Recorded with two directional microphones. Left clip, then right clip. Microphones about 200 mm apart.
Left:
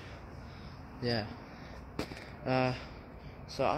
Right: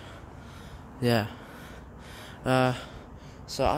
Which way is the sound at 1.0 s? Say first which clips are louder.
Right 8 dB; 60° right (ahead or behind).